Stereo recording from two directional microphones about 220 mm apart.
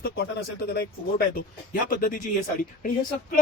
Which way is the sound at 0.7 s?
45° left (ahead or behind).